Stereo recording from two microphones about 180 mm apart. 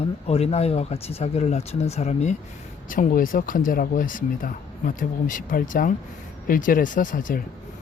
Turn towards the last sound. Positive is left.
turn(degrees=50)  # may be behind; listen again after turning